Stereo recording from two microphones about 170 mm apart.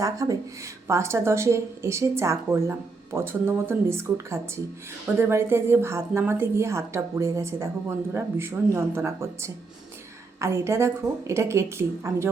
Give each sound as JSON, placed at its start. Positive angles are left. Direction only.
{"t": 0.0, "sound": "speech", "side_deg": -20}